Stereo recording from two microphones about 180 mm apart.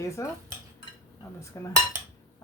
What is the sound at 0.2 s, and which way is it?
Speech, 15° left (ahead or behind).